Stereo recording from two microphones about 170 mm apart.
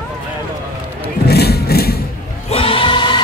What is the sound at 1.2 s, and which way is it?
Vehicle, 70° left (ahead or behind).